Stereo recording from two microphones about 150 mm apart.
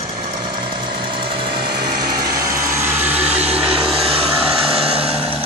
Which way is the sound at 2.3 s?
20° right (ahead or behind).